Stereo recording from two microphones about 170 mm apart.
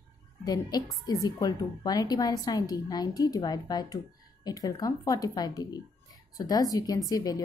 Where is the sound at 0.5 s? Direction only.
25° left (ahead or behind).